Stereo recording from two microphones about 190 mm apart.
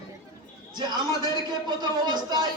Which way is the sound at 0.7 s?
20° right (ahead or behind).